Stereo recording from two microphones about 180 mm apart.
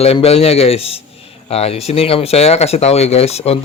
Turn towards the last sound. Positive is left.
turn(degrees=35)  # may be behind; listen again after turning